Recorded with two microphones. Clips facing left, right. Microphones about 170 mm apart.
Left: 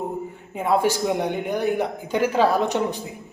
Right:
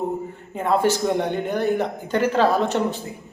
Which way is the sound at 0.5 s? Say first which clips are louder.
Right 1 dB; 10° left (ahead or behind).